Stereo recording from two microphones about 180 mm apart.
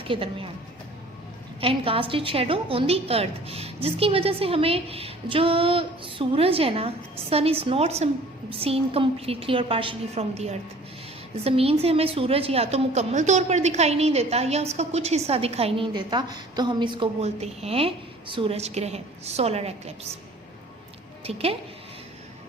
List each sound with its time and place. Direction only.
0.0 s speech: 30° right (ahead or behind)
1.6 s a woman's voice: 30° right (ahead or behind)
21.2 s a woman's voice: 35° right (ahead or behind)